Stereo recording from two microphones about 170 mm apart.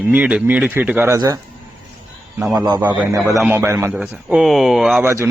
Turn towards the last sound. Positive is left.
turn(degrees=-5)  # may be behind; listen again after turning